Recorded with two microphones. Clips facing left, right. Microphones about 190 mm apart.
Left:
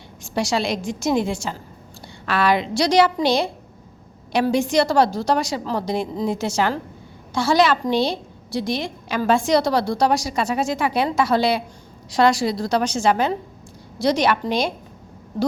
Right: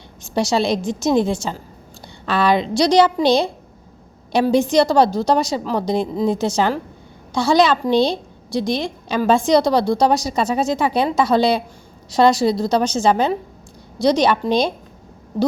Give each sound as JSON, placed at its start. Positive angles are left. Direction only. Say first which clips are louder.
{"t": 0.3, "sound": "a woman's voice", "louder": "right 4 dB", "side_deg": -25}